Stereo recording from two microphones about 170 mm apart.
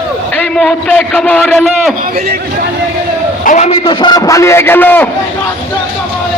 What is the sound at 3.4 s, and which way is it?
A man's voice, 45° left (ahead or behind).